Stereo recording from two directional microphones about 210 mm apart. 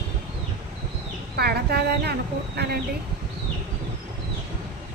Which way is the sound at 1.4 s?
50° right (ahead or behind).